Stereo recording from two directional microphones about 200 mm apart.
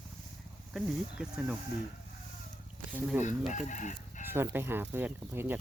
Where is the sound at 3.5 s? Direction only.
40° left (ahead or behind).